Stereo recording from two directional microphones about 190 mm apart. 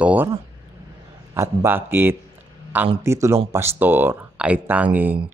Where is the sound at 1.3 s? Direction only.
15° right (ahead or behind).